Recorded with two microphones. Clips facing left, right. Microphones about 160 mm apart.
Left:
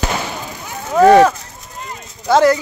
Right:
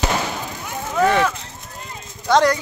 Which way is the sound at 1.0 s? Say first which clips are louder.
Left 9 dB; 40° left (ahead or behind).